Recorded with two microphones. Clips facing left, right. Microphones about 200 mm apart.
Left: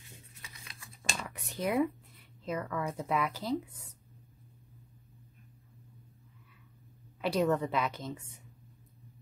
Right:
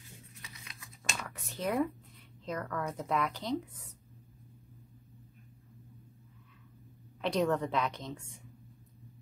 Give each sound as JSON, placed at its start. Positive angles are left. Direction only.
{"t": 0.7, "sound": "scissors", "side_deg": 30}
{"t": 1.2, "sound": "a sound", "side_deg": 15}
{"t": 2.4, "sound": "speech", "side_deg": 5}
{"t": 7.2, "sound": "a woman's voice", "side_deg": 5}